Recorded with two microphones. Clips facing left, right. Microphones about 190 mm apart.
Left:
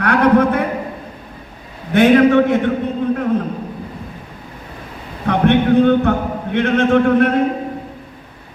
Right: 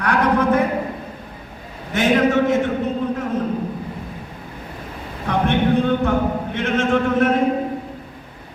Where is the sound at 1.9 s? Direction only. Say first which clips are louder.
Left 6 dB; 60° left (ahead or behind).